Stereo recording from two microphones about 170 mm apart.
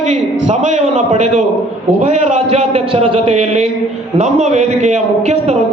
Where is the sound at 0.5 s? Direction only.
45° right (ahead or behind).